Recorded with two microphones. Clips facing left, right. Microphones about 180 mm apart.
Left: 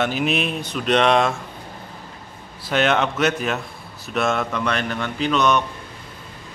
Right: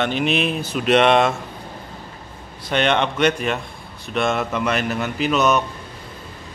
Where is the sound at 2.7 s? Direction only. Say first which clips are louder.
Even; 5° left (ahead or behind).